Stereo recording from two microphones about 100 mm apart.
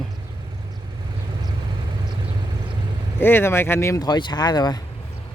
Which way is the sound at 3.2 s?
25° left (ahead or behind).